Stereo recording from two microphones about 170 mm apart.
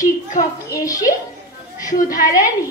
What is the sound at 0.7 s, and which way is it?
Speech, 20° left (ahead or behind).